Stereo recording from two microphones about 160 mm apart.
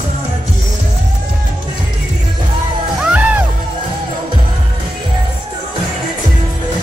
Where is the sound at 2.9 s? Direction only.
5° right (ahead or behind).